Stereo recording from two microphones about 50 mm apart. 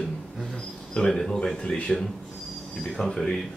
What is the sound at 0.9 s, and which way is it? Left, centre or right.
Speech, centre.